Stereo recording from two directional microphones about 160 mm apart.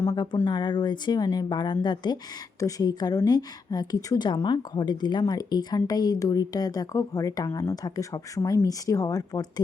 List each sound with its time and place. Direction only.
0.0 s speech: 15° left (ahead or behind)
0.4 s speech: 25° left (ahead or behind)